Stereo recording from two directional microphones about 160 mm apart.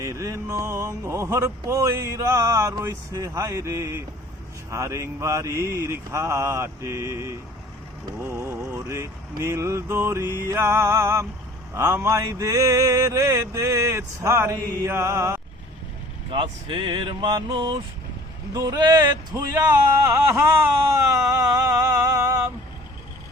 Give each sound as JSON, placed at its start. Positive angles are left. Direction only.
{"t": 0.0, "sound": "speech", "side_deg": -20}
{"t": 16.3, "sound": "speech", "side_deg": -30}
{"t": 19.5, "sound": "a sound", "side_deg": -20}